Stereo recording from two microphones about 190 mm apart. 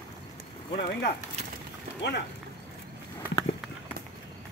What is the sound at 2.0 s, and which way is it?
Speech, 65° left (ahead or behind).